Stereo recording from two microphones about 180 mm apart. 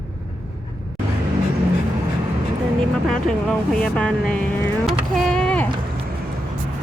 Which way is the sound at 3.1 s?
5° left (ahead or behind).